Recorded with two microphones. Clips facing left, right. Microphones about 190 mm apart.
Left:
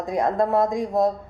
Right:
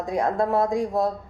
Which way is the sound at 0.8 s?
20° left (ahead or behind).